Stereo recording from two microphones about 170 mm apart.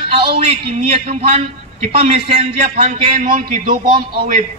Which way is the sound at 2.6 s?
50° right (ahead or behind).